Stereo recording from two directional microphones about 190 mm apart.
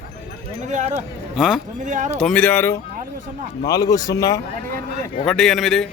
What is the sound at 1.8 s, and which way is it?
Speech, 40° right (ahead or behind).